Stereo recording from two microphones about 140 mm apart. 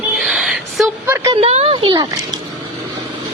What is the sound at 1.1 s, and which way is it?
Speech, 20° right (ahead or behind).